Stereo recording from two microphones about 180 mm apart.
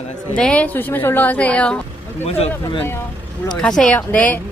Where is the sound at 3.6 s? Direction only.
5° left (ahead or behind).